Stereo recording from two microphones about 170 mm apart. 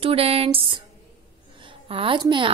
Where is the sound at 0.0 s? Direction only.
35° right (ahead or behind).